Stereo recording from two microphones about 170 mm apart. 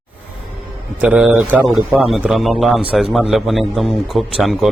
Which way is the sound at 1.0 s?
5° right (ahead or behind).